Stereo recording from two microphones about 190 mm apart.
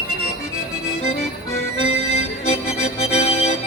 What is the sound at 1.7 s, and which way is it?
Music, 30° left (ahead or behind).